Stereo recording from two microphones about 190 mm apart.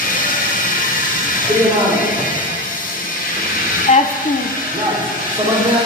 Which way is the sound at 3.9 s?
35° left (ahead or behind).